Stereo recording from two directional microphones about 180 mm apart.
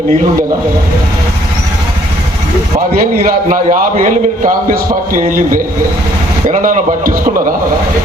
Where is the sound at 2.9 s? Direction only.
50° right (ahead or behind).